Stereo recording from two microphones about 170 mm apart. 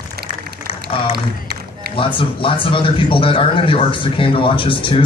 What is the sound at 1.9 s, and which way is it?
A man's voice, 30° left (ahead or behind).